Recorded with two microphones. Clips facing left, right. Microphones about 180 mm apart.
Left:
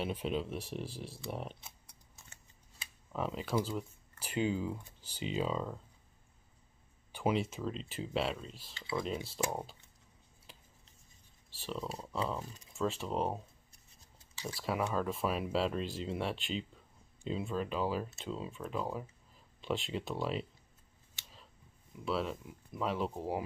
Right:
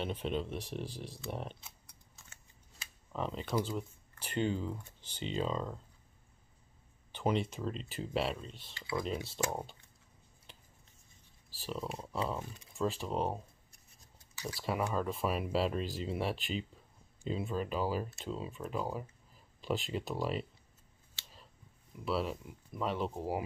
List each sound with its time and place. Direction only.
0.0 s speech: 5° left (ahead or behind)
3.1 s speech: 5° left (ahead or behind)
7.1 s speech: 5° left (ahead or behind)
8.7 s speech: 25° left (ahead or behind)
11.5 s speech: 5° right (ahead or behind)
14.6 s speech: centre (ahead or behind)
21.9 s speech: centre (ahead or behind)